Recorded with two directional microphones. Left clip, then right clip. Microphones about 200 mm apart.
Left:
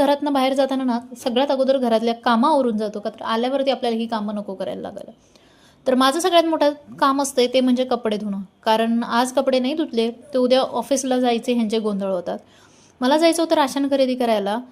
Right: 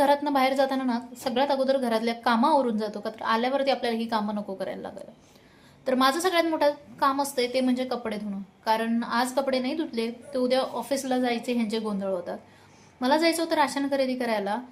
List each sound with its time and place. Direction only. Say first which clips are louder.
0.0 s a woman's voice: left 4 dB; 30° left (ahead or behind)